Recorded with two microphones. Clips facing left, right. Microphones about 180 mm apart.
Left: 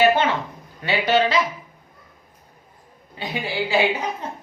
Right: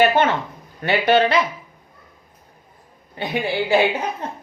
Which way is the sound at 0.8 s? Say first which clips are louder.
Right 3 dB; 55° right (ahead or behind).